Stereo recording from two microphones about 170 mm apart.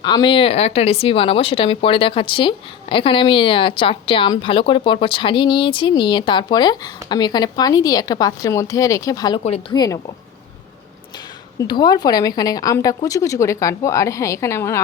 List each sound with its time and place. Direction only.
0.0 s speech: 25° left (ahead or behind)
9.4 s speech: 35° left (ahead or behind)
9.7 s speech: 25° left (ahead or behind)
11.7 s speech: 25° left (ahead or behind)